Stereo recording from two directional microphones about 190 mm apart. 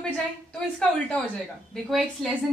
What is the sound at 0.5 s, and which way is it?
A woman's voice, 5° left (ahead or behind).